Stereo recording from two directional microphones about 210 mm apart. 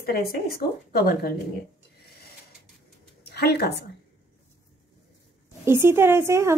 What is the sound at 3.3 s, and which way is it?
Speech, 50° left (ahead or behind).